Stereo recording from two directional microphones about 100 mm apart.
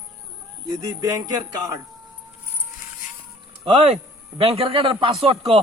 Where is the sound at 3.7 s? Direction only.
80° right.